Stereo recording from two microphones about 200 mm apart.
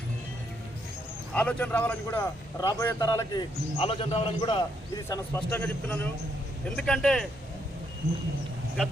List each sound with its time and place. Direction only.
1.3 s a man's voice: 5° left (ahead or behind); by 4.6 s 25° left (ahead or behind)
5.0 s a man's voice: 15° left (ahead or behind)